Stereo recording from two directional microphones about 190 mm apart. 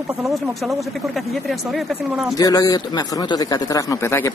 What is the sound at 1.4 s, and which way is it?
Speech, centre (ahead or behind).